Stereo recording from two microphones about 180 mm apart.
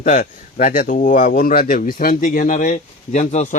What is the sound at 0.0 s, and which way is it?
Speech, 45° left (ahead or behind).